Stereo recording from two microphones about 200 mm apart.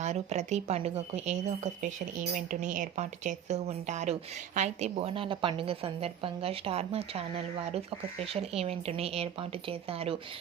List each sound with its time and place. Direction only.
0.0 s speech: 35° right (ahead or behind)